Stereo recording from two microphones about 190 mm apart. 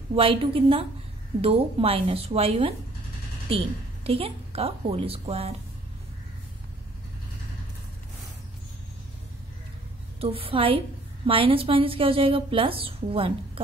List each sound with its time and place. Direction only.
0.1 s a woman's voice: 30° right (ahead or behind)
10.2 s a woman's voice: 30° right (ahead or behind)